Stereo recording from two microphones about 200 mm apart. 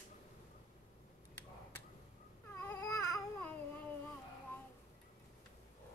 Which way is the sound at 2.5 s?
10° left (ahead or behind).